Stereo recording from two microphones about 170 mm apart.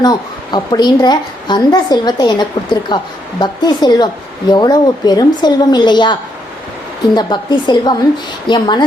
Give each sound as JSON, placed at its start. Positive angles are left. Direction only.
{"t": 0.0, "sound": "a woman's voice", "side_deg": 25}